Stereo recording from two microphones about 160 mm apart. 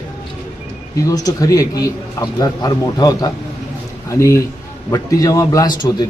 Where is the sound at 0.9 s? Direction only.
20° left (ahead or behind).